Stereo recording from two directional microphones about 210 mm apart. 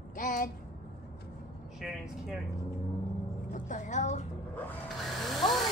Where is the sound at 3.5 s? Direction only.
35° left (ahead or behind).